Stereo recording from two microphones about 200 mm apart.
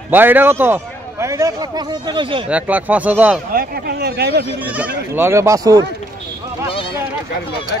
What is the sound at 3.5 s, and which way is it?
Speech, 50° right (ahead or behind).